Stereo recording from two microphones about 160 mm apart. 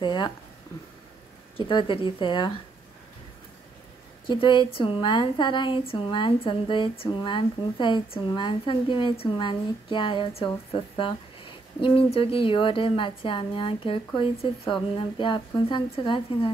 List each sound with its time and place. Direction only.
0.0 s speech: 30° left (ahead or behind)
1.7 s speech: 30° left (ahead or behind)
4.3 s speech: 30° left (ahead or behind)